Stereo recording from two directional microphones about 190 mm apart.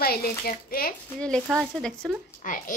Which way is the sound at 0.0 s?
50° left (ahead or behind).